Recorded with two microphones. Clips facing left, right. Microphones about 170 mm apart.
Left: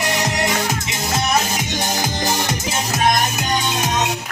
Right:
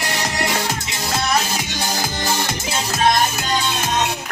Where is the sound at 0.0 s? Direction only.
20° left (ahead or behind).